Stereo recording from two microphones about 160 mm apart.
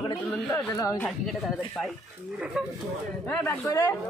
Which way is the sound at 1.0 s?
Centre (ahead or behind).